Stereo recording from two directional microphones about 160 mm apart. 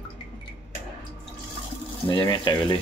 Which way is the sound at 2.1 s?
30° left (ahead or behind).